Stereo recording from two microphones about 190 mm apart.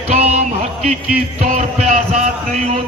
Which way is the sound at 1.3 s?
45° right (ahead or behind).